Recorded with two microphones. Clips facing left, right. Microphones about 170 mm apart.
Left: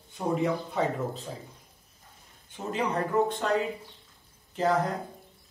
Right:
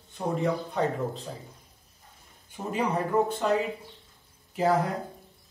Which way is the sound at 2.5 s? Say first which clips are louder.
Right 1 dB; 10° right (ahead or behind).